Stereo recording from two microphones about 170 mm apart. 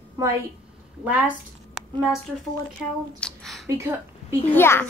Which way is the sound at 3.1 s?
5° left (ahead or behind).